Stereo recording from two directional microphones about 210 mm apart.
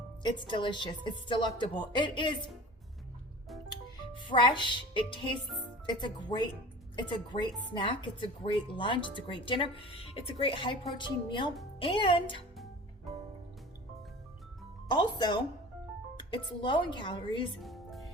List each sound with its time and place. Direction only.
0.2 s speech: 20° left (ahead or behind)
4.1 s music: 20° left (ahead or behind)
5.8 s speech: 20° left (ahead or behind)
13.1 s music: centre (ahead or behind)
14.8 s speech: 20° left (ahead or behind)
17.6 s music: centre (ahead or behind)